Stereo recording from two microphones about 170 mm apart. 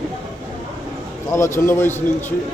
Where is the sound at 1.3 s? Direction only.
15° left (ahead or behind).